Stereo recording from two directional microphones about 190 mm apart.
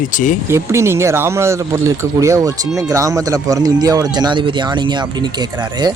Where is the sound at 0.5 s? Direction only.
15° right (ahead or behind).